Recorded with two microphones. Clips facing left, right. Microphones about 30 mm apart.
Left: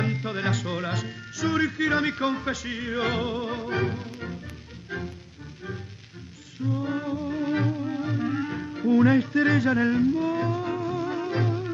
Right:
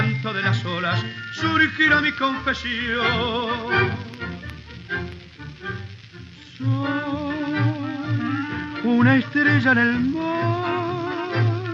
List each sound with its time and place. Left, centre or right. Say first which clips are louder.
0.0 s music: right 4 dB; right
2.0 s music: right 4 dB; right
4.0 s music: right 3 dB; right
6.8 s music: right 7 dB; right
7.4 s music: right 2 dB; right
8.6 s music: right 2 dB; right
9.9 s music: right 1 dB; right
11.0 s music: right 2 dB; right